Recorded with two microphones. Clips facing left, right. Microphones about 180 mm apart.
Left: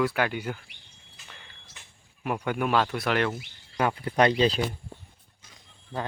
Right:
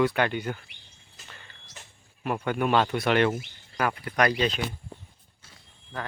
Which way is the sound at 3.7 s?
25° left (ahead or behind).